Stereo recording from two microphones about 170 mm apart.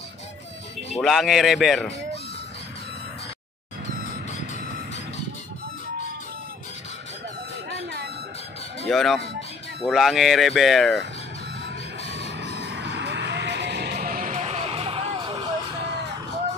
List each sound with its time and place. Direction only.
1.0 s speech: centre (ahead or behind)
8.8 s speech: centre (ahead or behind)
12.3 s music: 90° right
13.9 s vehicle: 50° right (ahead or behind); by 15.4 s 30° right (ahead or behind)